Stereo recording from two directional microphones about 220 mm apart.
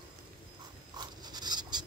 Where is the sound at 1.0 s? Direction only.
20° right (ahead or behind).